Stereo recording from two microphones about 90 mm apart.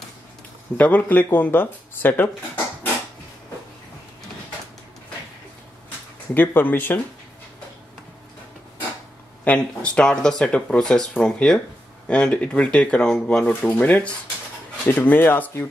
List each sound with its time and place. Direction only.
0.7 s speech: 15° left (ahead or behind)
6.3 s speech: 20° left (ahead or behind)
9.4 s speech: 15° left (ahead or behind)
13.5 s speech: 20° left (ahead or behind)